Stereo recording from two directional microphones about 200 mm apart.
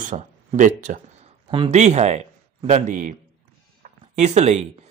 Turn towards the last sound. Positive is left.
turn(degrees=-35)  # may be behind; listen again after turning